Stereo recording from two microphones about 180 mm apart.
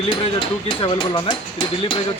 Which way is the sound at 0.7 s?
30° left (ahead or behind).